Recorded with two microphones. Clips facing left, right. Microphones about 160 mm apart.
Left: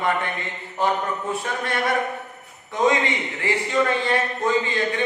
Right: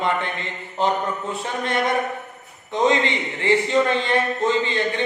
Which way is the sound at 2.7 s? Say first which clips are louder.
Right 1 dB; 25° right (ahead or behind).